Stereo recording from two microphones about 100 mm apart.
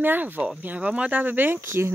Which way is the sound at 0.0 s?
20° right (ahead or behind).